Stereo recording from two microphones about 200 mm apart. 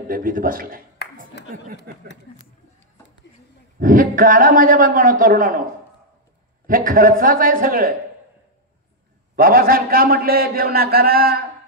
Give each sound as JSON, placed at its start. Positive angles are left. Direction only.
{"t": 0.1, "sound": "a man's voice", "side_deg": -45}
{"t": 1.9, "sound": "a man's voice", "side_deg": -50}
{"t": 3.8, "sound": "a man's voice", "side_deg": -40}
{"t": 6.7, "sound": "a man's voice", "side_deg": -45}
{"t": 9.3, "sound": "a man's voice", "side_deg": -45}